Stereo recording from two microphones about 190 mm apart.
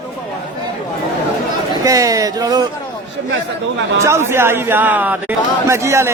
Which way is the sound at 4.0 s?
15° right (ahead or behind).